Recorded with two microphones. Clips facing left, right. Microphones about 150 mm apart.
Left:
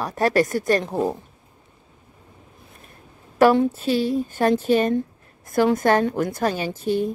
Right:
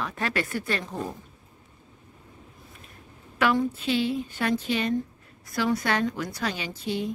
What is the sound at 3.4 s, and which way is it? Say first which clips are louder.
A woman's voice: left 8 dB; 40° left (ahead or behind).